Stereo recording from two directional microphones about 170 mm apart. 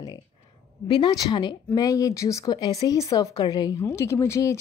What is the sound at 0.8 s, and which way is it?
A woman's voice, 25° left (ahead or behind).